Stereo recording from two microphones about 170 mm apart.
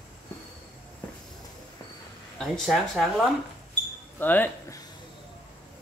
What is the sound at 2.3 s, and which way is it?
Speech, 5° left (ahead or behind).